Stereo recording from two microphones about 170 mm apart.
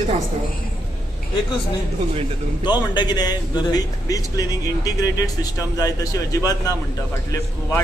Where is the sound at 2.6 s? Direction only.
25° left (ahead or behind).